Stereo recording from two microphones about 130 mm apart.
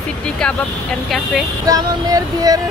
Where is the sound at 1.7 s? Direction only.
30° right (ahead or behind).